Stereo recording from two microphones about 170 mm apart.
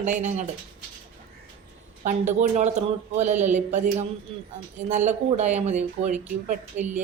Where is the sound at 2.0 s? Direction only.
45° right (ahead or behind).